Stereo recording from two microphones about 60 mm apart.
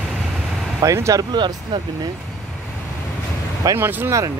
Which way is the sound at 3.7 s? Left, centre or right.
Right.